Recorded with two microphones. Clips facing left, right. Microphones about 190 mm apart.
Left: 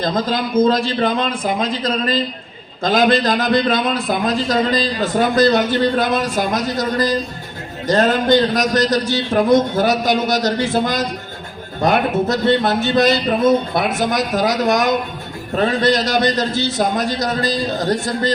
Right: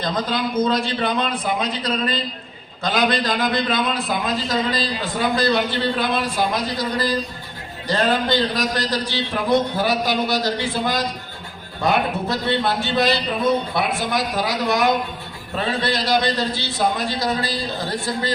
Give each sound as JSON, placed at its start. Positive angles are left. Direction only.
{"t": 0.0, "sound": "a man's voice", "side_deg": 45}
{"t": 2.8, "sound": "a man's voice", "side_deg": 45}